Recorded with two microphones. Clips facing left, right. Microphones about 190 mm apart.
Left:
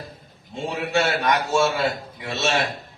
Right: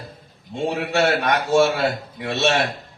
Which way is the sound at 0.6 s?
60° right (ahead or behind).